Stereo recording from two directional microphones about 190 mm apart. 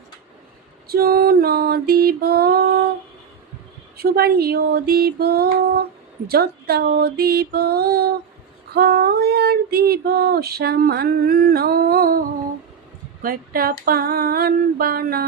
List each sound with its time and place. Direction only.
0.9 s speech: 55° right (ahead or behind)
3.9 s speech: 55° right (ahead or behind)
13.2 s female singing: 50° right (ahead or behind)